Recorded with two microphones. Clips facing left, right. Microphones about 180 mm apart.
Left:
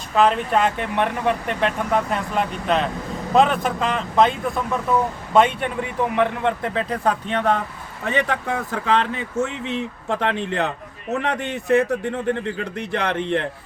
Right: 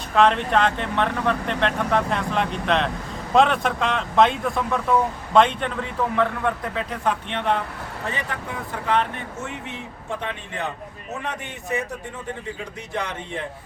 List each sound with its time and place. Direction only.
0.2 s a man's voice: 5° left (ahead or behind); by 6.5 s 20° left (ahead or behind)
6.7 s speech: 35° left (ahead or behind)
8.1 s speech: 85° left